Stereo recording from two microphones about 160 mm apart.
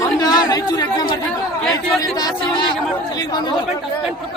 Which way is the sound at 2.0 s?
25° left (ahead or behind).